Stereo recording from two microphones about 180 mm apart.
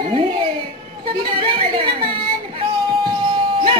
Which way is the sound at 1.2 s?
30° right (ahead or behind).